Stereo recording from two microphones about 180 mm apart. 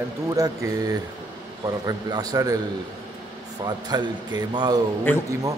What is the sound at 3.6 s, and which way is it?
Speech, 25° right (ahead or behind).